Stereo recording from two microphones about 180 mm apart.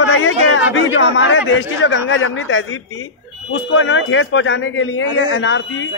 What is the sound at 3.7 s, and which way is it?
Speech, 90° left.